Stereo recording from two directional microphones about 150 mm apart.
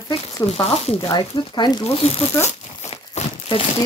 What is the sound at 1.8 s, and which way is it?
Speech, 45° left (ahead or behind).